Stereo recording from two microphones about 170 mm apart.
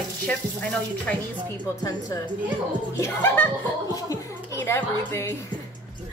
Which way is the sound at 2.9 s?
15° left (ahead or behind).